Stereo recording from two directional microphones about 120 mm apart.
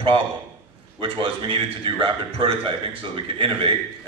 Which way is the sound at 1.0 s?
45° right (ahead or behind).